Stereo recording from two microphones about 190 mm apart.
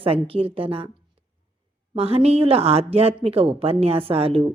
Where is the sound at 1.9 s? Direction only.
30° right (ahead or behind).